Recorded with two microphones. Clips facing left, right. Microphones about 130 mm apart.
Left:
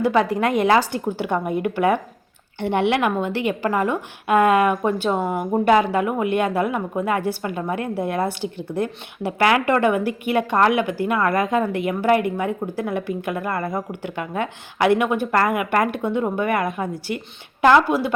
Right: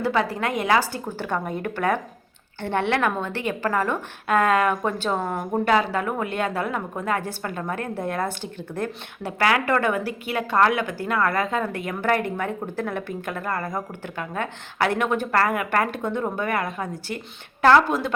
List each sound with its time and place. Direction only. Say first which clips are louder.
0.0 s a woman's voice: left 5 dB; 20° left (ahead or behind)